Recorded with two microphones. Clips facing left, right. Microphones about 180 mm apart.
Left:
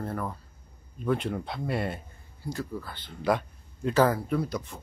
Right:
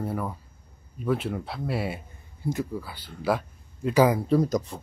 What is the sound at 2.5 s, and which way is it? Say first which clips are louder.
Speech: right 5 dB; 15° right (ahead or behind).